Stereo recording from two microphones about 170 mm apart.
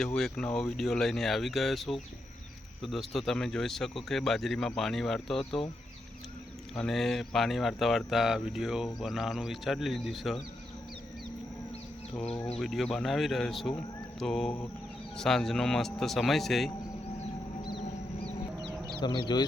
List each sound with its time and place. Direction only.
0.2 s speech: 5° left (ahead or behind)
6.7 s speech: 5° left (ahead or behind)
12.5 s speech: centre (ahead or behind)
17.6 s a sound: 25° left (ahead or behind)
19.0 s speech: 25° left (ahead or behind)